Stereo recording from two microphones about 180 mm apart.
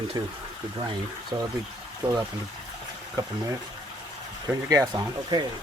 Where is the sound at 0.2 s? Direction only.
20° right (ahead or behind).